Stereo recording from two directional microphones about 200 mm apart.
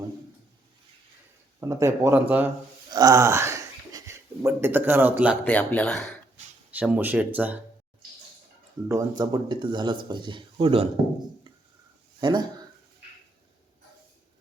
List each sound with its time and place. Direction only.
1.6 s speech: 15° right (ahead or behind)
5.5 s speech: 5° left (ahead or behind)
6.7 s speech: 5° right (ahead or behind)
8.9 s speech: 20° right (ahead or behind)
12.2 s speech: 20° right (ahead or behind)